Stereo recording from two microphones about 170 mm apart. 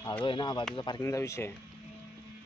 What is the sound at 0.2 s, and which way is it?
Speech, 30° left (ahead or behind).